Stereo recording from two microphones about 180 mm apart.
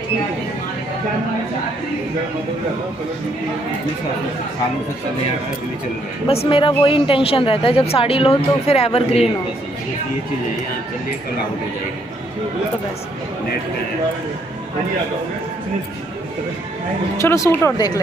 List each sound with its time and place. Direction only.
6.2 s a woman's voice: 30° left (ahead or behind)
17.2 s speech: 15° left (ahead or behind)